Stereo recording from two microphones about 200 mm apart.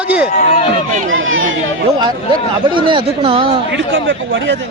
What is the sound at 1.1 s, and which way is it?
Speech, 80° right.